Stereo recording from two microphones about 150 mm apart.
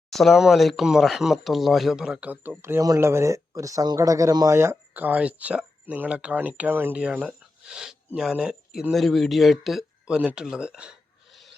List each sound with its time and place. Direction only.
0.1 s speech: centre (ahead or behind)